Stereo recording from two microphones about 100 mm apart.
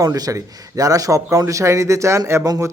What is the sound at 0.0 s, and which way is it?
A woman's voice, 35° right (ahead or behind).